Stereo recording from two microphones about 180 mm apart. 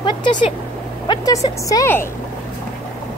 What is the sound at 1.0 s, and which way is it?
A woman's voice, 20° left (ahead or behind).